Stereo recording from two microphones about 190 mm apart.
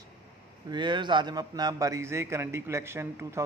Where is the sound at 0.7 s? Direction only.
25° right (ahead or behind).